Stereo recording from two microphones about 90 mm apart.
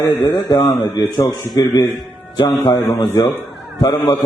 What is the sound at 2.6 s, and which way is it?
Speech, 40° left (ahead or behind).